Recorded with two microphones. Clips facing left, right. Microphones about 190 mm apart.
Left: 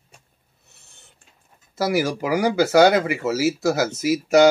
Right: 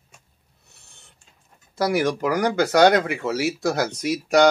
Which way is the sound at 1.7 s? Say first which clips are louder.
Even; 5° left (ahead or behind).